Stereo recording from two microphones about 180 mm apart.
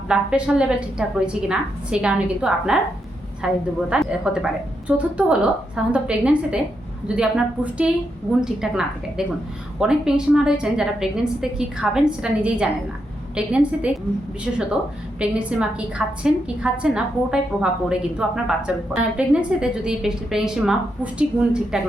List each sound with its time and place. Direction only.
0.1 s a woman's voice: 5° right (ahead or behind)
15.2 s a woman's voice: 5° right (ahead or behind)